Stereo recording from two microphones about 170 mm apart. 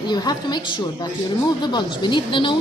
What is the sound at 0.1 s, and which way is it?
Speech, 25° left (ahead or behind).